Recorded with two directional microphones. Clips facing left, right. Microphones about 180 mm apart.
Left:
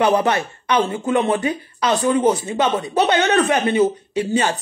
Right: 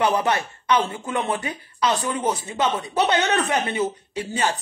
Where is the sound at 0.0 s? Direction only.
20° left (ahead or behind).